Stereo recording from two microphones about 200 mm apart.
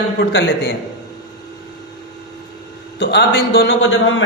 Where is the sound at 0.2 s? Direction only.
60° left (ahead or behind).